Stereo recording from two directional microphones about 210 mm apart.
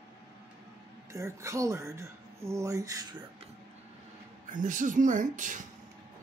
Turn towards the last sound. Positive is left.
turn(degrees=-40)  # may be behind; listen again after turning